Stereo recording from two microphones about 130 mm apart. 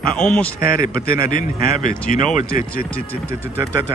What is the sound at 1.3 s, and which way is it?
A man's voice, 90° left.